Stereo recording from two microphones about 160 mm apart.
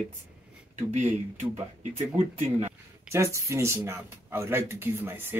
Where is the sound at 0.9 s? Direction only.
50° right (ahead or behind).